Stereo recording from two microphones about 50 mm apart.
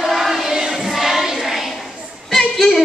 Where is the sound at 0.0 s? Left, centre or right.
Centre.